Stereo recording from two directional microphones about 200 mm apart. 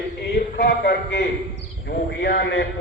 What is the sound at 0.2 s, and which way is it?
A man's voice, 50° left (ahead or behind).